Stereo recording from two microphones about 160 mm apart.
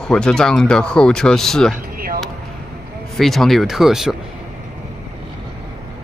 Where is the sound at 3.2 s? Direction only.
Centre (ahead or behind).